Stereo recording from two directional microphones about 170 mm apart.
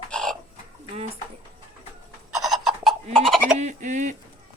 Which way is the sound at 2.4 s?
Centre (ahead or behind).